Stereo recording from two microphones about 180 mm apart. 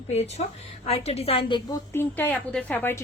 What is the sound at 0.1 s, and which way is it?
A woman's voice, 40° left (ahead or behind).